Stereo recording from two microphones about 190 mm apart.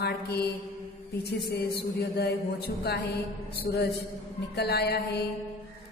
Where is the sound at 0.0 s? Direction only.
60° left (ahead or behind).